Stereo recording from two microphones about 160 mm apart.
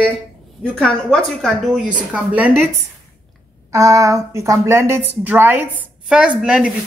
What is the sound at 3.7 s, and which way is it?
A woman's voice, 20° right (ahead or behind).